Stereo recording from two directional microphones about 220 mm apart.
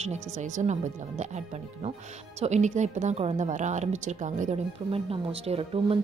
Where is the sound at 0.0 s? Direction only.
30° right (ahead or behind).